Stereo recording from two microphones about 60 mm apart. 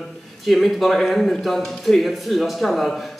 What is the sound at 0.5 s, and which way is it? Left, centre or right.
Speech, centre.